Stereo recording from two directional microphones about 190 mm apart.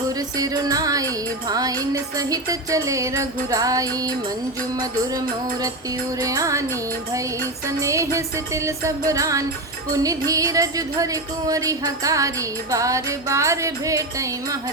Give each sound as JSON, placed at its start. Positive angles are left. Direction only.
{"t": 0.3, "sound": "music", "side_deg": -20}
{"t": 6.2, "sound": "music", "side_deg": -15}
{"t": 7.8, "sound": "music", "side_deg": -15}